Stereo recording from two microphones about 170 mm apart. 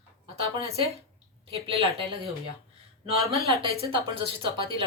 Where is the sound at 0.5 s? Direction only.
35° right (ahead or behind).